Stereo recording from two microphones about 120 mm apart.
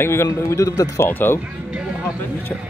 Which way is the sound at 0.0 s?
20° left (ahead or behind).